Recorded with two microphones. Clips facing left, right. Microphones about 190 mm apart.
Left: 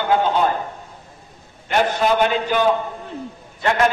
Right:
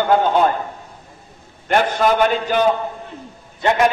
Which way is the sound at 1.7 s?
50° right (ahead or behind).